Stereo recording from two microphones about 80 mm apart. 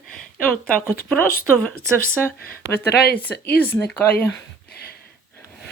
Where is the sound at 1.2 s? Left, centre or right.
Left.